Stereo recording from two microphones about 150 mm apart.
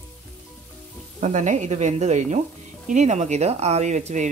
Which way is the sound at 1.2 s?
55° right (ahead or behind).